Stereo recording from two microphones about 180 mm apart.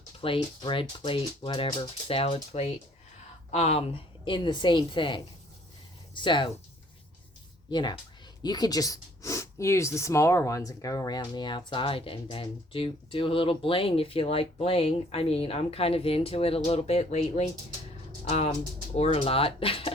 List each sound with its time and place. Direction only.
0.2 s speech: 30° left (ahead or behind)
7.7 s speech: 25° left (ahead or behind)